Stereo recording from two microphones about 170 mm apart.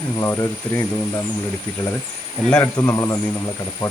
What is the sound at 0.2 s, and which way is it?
Speech, 15° left (ahead or behind).